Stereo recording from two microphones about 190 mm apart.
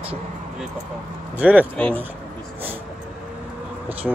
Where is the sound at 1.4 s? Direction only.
10° right (ahead or behind).